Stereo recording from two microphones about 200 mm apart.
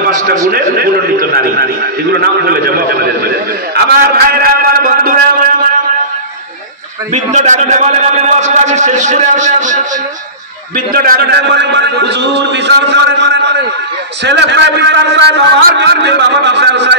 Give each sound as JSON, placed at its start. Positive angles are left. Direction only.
{"t": 1.3, "sound": "a man's voice", "side_deg": -50}
{"t": 7.2, "sound": "a man's voice", "side_deg": -35}
{"t": 10.9, "sound": "a man's voice", "side_deg": -45}